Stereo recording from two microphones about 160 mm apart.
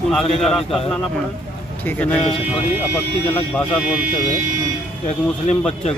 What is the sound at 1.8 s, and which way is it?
Speech, 10° left (ahead or behind).